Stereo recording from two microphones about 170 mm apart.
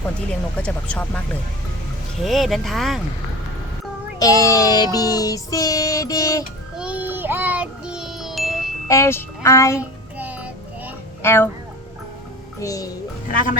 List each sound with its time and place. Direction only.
0.3 s speech: 5° left (ahead or behind)
2.2 s speech: centre (ahead or behind)
4.2 s child singing: 20° left (ahead or behind)
6.7 s wind chime: 5° right (ahead or behind)
8.9 s speech: 15° left (ahead or behind)
10.2 s child singing: 10° right (ahead or behind)
11.2 s speech: 15° left (ahead or behind)
12.5 s a child's voice: 20° left (ahead or behind)
13.3 s speech: 55° left (ahead or behind)